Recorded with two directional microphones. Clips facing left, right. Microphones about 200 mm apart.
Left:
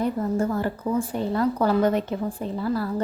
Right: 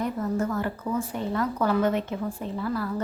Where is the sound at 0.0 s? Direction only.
30° left (ahead or behind).